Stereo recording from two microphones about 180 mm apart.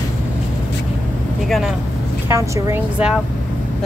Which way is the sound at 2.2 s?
15° right (ahead or behind).